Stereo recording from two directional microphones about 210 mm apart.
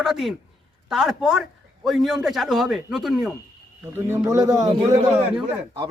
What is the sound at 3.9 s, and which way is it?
Speech, 10° right (ahead or behind).